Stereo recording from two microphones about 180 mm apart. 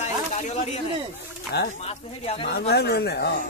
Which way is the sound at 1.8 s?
35° left (ahead or behind).